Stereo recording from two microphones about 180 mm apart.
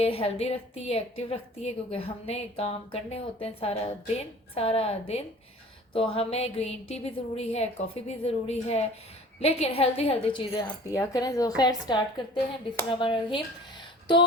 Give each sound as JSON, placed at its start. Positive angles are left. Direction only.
{"t": 0.0, "sound": "a woman's voice", "side_deg": 30}